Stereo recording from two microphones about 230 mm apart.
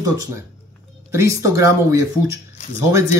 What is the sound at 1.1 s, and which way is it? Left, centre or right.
Speech, centre.